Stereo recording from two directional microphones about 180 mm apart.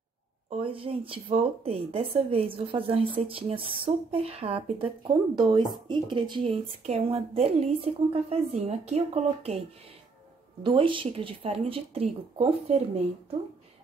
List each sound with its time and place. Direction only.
0.5 s speech: 30° right (ahead or behind)
10.6 s speech: 30° right (ahead or behind)